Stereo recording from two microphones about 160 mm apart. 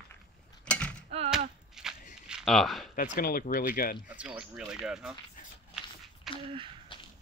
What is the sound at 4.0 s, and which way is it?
Speech, 10° right (ahead or behind).